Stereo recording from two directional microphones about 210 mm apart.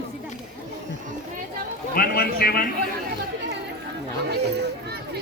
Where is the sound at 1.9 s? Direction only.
45° left (ahead or behind).